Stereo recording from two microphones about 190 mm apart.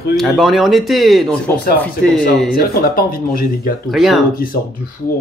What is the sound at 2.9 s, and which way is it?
Speech, 50° left (ahead or behind).